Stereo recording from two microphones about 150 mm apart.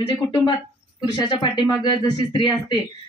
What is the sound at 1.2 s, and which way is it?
Speech, 30° left (ahead or behind).